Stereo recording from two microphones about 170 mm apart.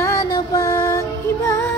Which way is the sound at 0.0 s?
20° left (ahead or behind).